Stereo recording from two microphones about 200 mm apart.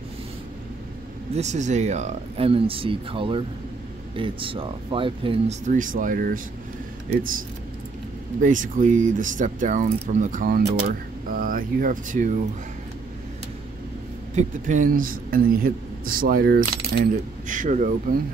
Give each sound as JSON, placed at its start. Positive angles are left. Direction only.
{"t": 1.3, "sound": "speech", "side_deg": -35}
{"t": 5.7, "sound": "speech", "side_deg": -40}
{"t": 8.4, "sound": "speech", "side_deg": -40}
{"t": 14.3, "sound": "speech", "side_deg": -40}